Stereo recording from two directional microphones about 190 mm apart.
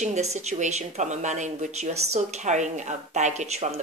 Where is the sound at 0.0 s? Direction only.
35° right (ahead or behind).